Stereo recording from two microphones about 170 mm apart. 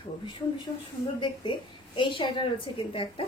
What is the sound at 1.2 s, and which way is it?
A woman's voice, 30° left (ahead or behind).